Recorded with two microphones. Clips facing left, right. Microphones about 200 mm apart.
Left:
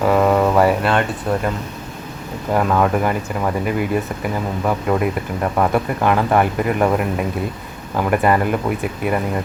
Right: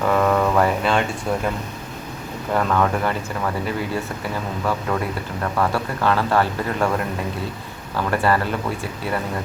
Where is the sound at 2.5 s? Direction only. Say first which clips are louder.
Left 3 dB; 10° left (ahead or behind).